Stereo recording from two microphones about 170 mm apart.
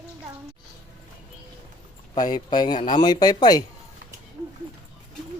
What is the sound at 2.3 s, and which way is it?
Speech, 25° left (ahead or behind).